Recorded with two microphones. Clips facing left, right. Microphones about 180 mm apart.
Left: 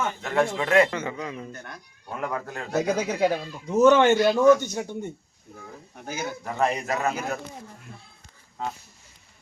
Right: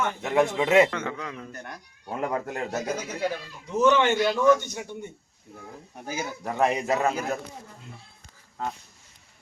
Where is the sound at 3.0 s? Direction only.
70° left (ahead or behind).